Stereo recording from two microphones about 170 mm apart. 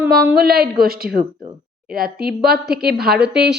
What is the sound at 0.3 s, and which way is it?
A woman's voice, 65° right (ahead or behind).